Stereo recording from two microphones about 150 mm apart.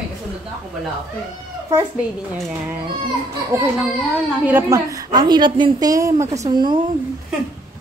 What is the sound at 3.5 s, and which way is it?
A woman's voice, 20° right (ahead or behind).